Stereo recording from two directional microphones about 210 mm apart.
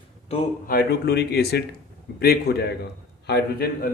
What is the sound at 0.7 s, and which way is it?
A man's voice, 50° left (ahead or behind).